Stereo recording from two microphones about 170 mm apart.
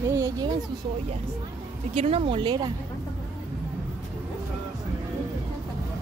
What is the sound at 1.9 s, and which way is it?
Speech, 35° right (ahead or behind).